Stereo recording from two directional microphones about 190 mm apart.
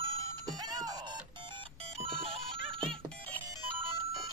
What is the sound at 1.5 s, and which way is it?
Music, 30° right (ahead or behind).